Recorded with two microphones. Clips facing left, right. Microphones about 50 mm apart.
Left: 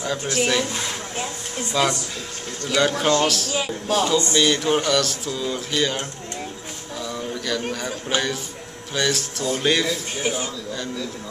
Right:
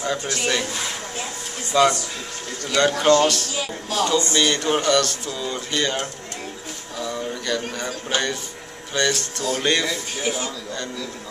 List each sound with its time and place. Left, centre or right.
0.3 s speech: centre
1.7 s speech: centre
2.7 s speech: centre
3.5 s speech: left
4.3 s speech: centre
7.0 s a sound: centre
7.7 s speech: centre